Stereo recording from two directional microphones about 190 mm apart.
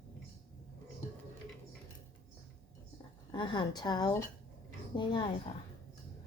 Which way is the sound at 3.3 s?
25° left (ahead or behind).